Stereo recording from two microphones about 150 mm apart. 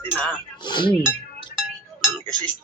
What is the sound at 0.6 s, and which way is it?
Speech, 30° left (ahead or behind).